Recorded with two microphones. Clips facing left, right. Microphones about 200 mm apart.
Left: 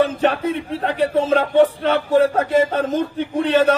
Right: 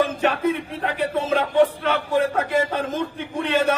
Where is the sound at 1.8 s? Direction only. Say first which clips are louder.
Left 5 dB; 35° left (ahead or behind).